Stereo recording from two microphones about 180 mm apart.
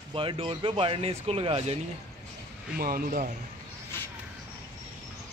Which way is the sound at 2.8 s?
55° right (ahead or behind).